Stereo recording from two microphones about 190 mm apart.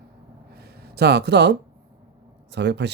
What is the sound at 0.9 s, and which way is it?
Speech, 60° right (ahead or behind).